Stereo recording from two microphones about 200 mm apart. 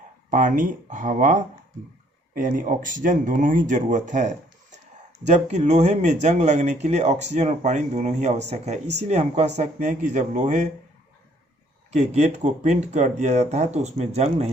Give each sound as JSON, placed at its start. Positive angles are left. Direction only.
{"t": 0.3, "sound": "speech", "side_deg": -40}
{"t": 11.9, "sound": "speech", "side_deg": -35}